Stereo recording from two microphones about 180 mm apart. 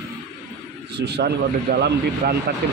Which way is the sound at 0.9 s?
70° right (ahead or behind).